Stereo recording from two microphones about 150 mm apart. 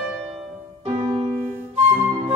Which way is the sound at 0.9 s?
40° right (ahead or behind).